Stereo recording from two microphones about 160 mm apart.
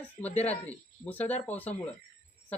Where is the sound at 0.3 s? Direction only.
10° left (ahead or behind).